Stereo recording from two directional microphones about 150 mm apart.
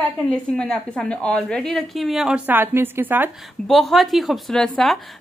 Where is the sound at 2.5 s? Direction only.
15° right (ahead or behind).